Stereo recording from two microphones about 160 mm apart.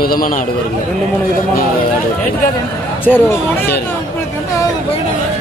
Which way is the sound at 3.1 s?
Centre (ahead or behind).